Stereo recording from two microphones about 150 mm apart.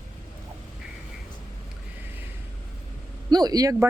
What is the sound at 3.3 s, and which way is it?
Speech, 25° right (ahead or behind).